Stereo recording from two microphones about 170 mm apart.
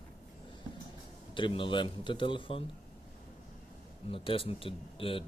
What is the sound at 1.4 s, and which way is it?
Speech, 30° left (ahead or behind).